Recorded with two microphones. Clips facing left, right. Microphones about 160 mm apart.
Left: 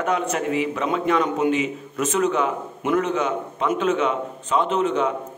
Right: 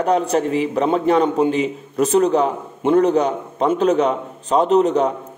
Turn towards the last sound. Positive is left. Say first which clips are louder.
# right 6 dB
turn(degrees=-40)  # may be behind; listen again after turning